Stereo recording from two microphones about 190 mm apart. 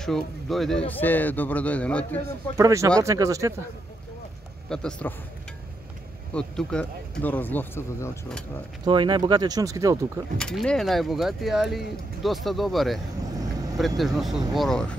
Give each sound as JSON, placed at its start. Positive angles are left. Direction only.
{"t": 0.0, "sound": "speech", "side_deg": 0}
{"t": 2.5, "sound": "speech", "side_deg": -15}
{"t": 4.6, "sound": "speech", "side_deg": 5}
{"t": 6.3, "sound": "speech", "side_deg": 5}
{"t": 8.8, "sound": "speech", "side_deg": -25}
{"t": 10.3, "sound": "speech", "side_deg": 5}